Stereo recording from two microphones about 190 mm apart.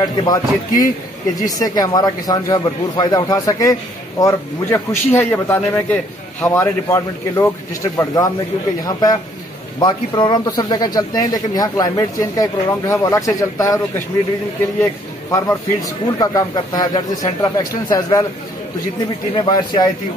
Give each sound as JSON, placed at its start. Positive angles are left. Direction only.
{"t": 0.0, "sound": "a man's voice", "side_deg": 20}
{"t": 8.8, "sound": "speech", "side_deg": 20}
{"t": 15.3, "sound": "speech", "side_deg": 20}
{"t": 19.3, "sound": "speech", "side_deg": 25}